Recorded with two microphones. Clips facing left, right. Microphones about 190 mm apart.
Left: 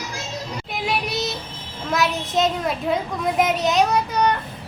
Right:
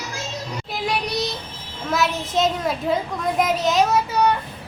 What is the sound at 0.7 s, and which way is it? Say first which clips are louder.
Child singing: right 1 dB; centre (ahead or behind).